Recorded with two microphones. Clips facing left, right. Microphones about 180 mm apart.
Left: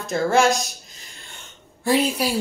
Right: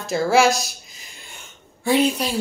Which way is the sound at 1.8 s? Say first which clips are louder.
Right 1 dB; centre (ahead or behind).